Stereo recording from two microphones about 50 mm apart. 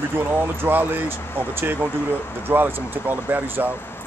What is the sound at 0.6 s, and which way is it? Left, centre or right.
Speech, right.